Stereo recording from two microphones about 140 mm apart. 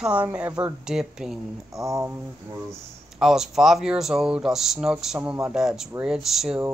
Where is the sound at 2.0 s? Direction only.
20° right (ahead or behind).